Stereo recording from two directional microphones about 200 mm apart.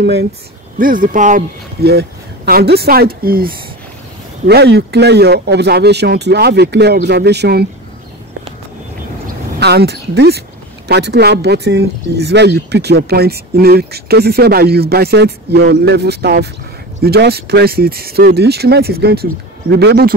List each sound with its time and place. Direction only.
0.0 s speech: 55° right (ahead or behind)
0.7 s speech: 45° right (ahead or behind)
1.9 s speech: 50° right (ahead or behind)
9.6 s speech: 55° right (ahead or behind)